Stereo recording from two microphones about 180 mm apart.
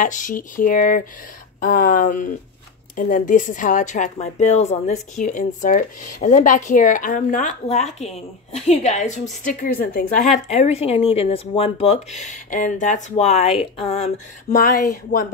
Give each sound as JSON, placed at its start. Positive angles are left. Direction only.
{"t": 0.0, "sound": "a woman's voice", "side_deg": 45}
{"t": 10.5, "sound": "a woman's voice", "side_deg": 35}